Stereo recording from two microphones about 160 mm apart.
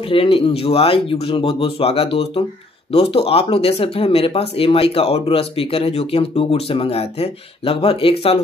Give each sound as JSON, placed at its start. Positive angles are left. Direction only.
{"t": 0.1, "sound": "speech", "side_deg": 35}